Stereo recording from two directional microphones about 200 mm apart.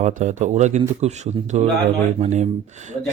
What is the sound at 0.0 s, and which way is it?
Speech, 35° right (ahead or behind).